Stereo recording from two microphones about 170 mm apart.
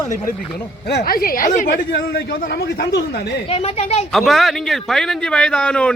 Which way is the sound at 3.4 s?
35° left (ahead or behind).